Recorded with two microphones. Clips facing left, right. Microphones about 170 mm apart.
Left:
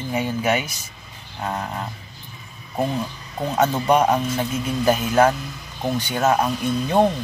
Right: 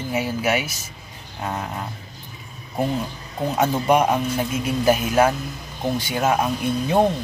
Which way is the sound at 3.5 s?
10° right (ahead or behind).